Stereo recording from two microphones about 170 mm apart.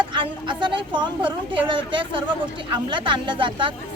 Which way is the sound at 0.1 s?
30° right (ahead or behind).